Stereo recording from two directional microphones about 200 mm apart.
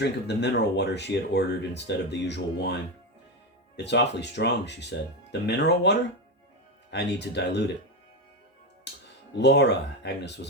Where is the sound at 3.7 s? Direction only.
60° left (ahead or behind).